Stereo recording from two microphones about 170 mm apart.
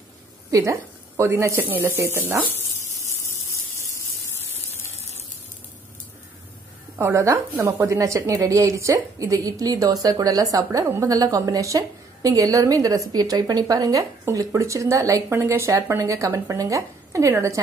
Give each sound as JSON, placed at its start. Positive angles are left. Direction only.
{"t": 0.5, "sound": "a woman's voice", "side_deg": -20}
{"t": 7.0, "sound": "a woman's voice", "side_deg": -15}